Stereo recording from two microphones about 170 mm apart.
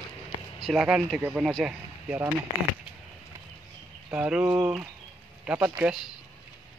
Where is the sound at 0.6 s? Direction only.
Centre (ahead or behind).